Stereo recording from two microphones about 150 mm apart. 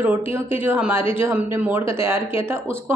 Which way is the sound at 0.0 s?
15° right (ahead or behind).